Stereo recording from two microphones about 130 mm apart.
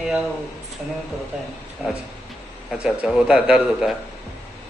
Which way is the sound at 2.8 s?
5° right (ahead or behind).